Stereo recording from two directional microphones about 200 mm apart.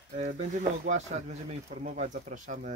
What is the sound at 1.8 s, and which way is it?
Speech, 40° right (ahead or behind).